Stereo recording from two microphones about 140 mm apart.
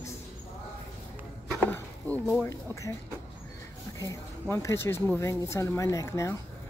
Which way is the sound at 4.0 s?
20° left (ahead or behind).